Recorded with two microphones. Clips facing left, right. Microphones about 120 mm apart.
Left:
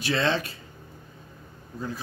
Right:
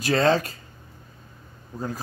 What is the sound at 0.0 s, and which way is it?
Speech, 40° right (ahead or behind).